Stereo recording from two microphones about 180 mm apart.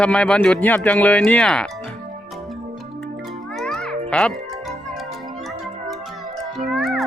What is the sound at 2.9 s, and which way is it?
Music, centre (ahead or behind).